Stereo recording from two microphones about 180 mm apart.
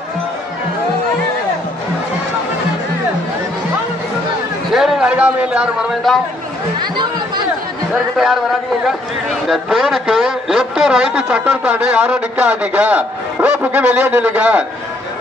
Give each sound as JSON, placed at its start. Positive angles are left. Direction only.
{"t": 4.7, "sound": "a man's voice", "side_deg": 0}
{"t": 6.8, "sound": "speech", "side_deg": -25}
{"t": 7.9, "sound": "a man's voice", "side_deg": 0}